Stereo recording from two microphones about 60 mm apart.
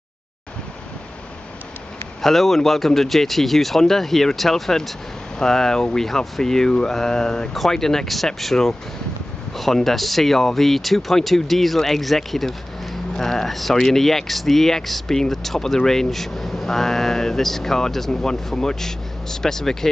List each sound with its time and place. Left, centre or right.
2.2 s speech: centre